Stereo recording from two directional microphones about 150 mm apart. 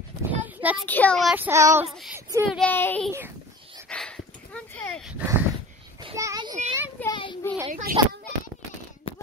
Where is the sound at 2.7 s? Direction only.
10° left (ahead or behind).